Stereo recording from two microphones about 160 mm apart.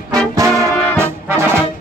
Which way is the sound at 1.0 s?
15° right (ahead or behind).